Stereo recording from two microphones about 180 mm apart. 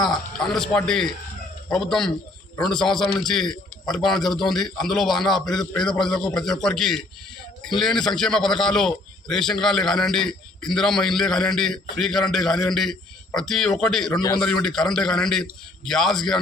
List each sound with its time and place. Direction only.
0.3 s a man's voice: 5° left (ahead or behind)
14.1 s a man's voice: 20° left (ahead or behind)
14.3 s a man's voice: 5° left (ahead or behind)